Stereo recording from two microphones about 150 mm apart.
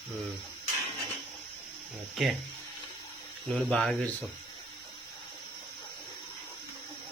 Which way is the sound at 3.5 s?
Centre (ahead or behind).